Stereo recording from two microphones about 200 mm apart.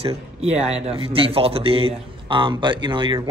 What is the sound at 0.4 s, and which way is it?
A man's voice, 30° right (ahead or behind).